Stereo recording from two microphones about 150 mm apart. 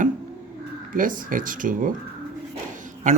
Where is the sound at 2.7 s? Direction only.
55° right (ahead or behind).